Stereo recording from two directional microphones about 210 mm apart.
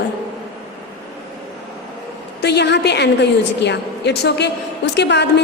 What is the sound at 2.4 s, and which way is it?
A woman's voice, 55° left (ahead or behind).